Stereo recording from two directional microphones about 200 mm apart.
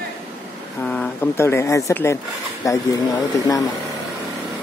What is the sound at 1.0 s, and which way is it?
Speech, 10° left (ahead or behind).